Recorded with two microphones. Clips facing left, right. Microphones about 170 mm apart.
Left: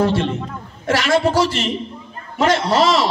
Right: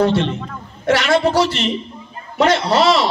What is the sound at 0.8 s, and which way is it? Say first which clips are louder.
A man's voice: right 1 dB; 45° left (ahead or behind).